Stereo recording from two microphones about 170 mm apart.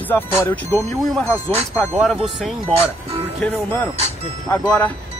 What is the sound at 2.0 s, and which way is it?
Speech, centre (ahead or behind).